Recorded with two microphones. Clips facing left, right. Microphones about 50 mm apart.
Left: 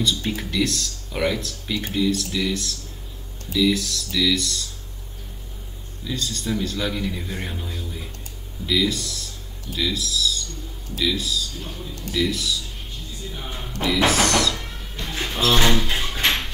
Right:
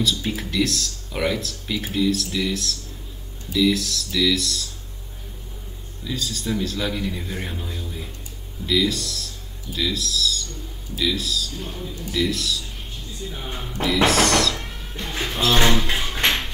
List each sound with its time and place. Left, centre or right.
0.0 s speech: centre
6.0 s speech: centre
14.6 s cat: centre
15.2 s speech: centre
15.8 s a sound: centre